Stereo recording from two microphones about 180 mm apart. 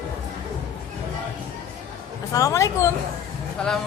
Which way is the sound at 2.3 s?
20° left (ahead or behind).